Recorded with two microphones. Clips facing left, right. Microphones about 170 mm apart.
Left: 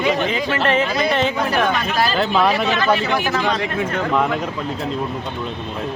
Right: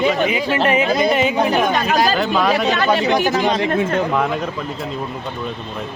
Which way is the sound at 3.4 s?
20° right (ahead or behind).